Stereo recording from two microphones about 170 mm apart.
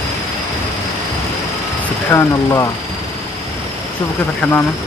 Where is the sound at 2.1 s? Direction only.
15° left (ahead or behind).